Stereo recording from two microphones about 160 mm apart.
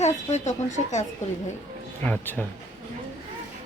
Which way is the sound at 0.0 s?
45° left (ahead or behind).